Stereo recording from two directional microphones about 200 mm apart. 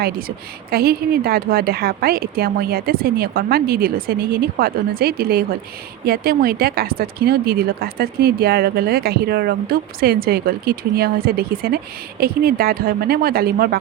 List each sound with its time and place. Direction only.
0.7 s speech: 50° right (ahead or behind)